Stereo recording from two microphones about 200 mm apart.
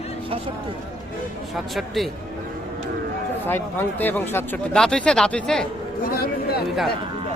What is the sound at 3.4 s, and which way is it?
A man's voice, 10° left (ahead or behind).